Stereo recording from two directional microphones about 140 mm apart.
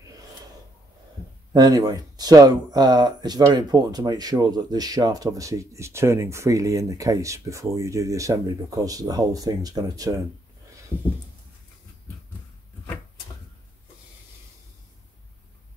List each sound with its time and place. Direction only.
1.5 s speech: 30° right (ahead or behind)